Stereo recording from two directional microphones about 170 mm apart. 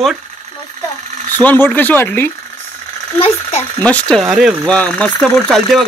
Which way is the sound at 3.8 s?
5° left (ahead or behind).